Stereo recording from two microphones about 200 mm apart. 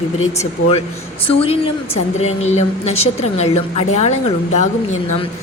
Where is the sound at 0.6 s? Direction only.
90° left.